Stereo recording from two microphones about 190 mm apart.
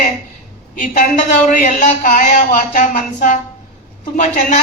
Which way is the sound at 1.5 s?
45° left (ahead or behind).